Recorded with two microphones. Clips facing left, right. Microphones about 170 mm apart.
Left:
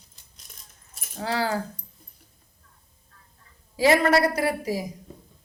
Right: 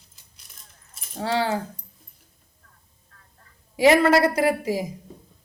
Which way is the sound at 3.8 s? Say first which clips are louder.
Right 3 dB; 20° right (ahead or behind).